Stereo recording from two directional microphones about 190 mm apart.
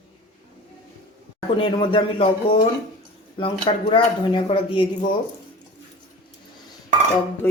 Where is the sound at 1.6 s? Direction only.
25° left (ahead or behind).